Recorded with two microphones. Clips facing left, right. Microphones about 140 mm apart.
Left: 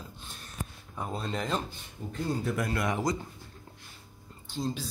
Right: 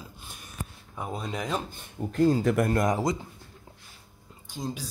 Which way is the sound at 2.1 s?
90° right.